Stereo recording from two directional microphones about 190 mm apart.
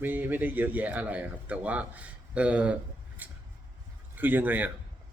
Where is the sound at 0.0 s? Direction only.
10° right (ahead or behind).